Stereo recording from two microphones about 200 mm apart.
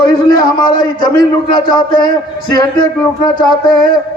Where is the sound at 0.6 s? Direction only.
20° left (ahead or behind).